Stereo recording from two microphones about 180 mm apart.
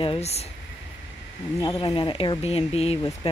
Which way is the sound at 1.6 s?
20° left (ahead or behind).